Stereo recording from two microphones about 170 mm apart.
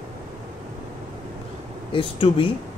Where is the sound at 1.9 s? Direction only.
30° left (ahead or behind).